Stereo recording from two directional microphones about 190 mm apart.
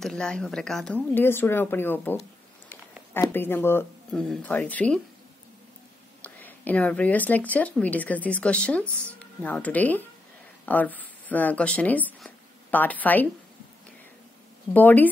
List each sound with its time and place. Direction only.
0.0 s speech: 5° left (ahead or behind)
6.2 s speech: 10° left (ahead or behind)
14.7 s speech: 10° left (ahead or behind)